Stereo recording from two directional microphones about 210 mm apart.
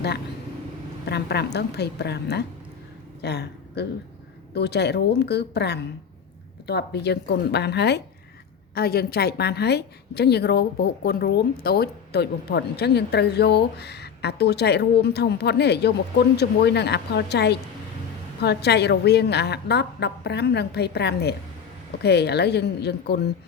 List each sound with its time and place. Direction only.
1.0 s a woman's voice: 50° left (ahead or behind)